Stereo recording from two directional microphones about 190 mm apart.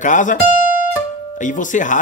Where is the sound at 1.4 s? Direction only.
40° left (ahead or behind).